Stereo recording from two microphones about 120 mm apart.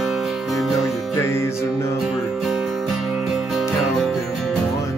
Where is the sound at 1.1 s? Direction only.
20° left (ahead or behind).